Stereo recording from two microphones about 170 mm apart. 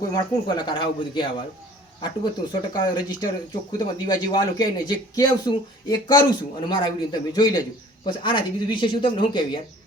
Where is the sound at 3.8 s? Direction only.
25° left (ahead or behind).